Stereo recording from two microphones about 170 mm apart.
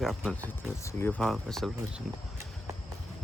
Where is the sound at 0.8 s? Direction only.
15° left (ahead or behind).